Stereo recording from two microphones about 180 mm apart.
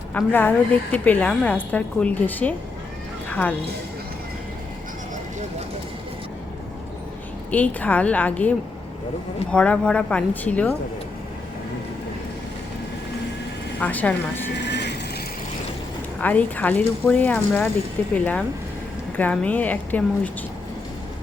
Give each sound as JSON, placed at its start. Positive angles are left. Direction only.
{"t": 0.1, "sound": "a woman's voice", "side_deg": 10}
{"t": 3.2, "sound": "a sound", "side_deg": 10}
{"t": 7.5, "sound": "a woman's voice", "side_deg": 10}
{"t": 13.7, "sound": "a woman's voice", "side_deg": 10}
{"t": 14.5, "sound": "vehicle", "side_deg": 75}
{"t": 16.2, "sound": "a woman's voice", "side_deg": 10}